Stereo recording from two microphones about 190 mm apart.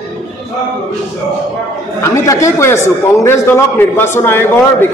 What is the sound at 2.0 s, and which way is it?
A man's voice, 15° left (ahead or behind).